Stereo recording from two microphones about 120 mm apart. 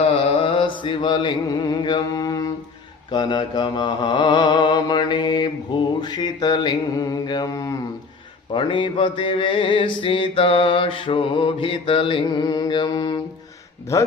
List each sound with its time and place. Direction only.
0.4 s mantra: 45° left (ahead or behind); by 7.8 s 30° left (ahead or behind)
8.5 s mantra: 45° left (ahead or behind)
13.9 s speech: 25° left (ahead or behind)